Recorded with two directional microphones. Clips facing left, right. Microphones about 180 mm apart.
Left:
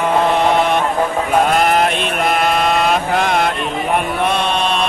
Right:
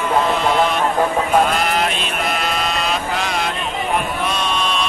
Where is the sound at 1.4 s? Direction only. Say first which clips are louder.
Left 5 dB; 50° left (ahead or behind).